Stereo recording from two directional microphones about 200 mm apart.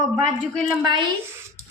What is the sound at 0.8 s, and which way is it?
Speech, 15° right (ahead or behind).